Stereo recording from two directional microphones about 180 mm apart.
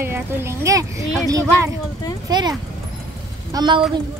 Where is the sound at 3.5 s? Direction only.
25° right (ahead or behind).